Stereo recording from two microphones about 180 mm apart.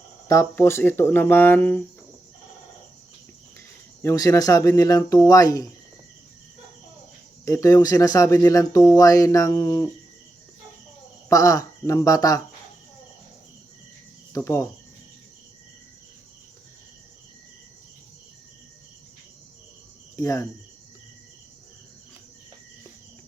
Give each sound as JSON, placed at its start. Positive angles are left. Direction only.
{"t": 0.3, "sound": "speech", "side_deg": 15}
{"t": 4.0, "sound": "speech", "side_deg": 20}
{"t": 7.4, "sound": "speech", "side_deg": 15}
{"t": 11.3, "sound": "speech", "side_deg": 20}
{"t": 14.3, "sound": "speech", "side_deg": 15}
{"t": 20.1, "sound": "speech", "side_deg": 15}